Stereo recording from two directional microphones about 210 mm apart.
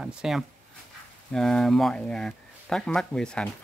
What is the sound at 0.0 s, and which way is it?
Speech, centre (ahead or behind).